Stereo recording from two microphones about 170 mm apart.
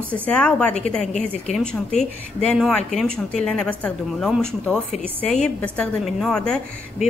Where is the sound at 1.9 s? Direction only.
40° left (ahead or behind).